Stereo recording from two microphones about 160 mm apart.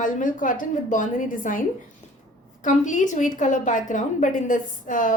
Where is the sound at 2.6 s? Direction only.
50° left (ahead or behind).